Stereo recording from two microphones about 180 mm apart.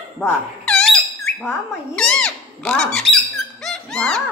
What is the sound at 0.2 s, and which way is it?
Bird, 5° left (ahead or behind).